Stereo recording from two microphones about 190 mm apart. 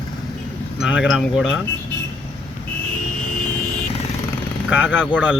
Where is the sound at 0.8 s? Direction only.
5° right (ahead or behind).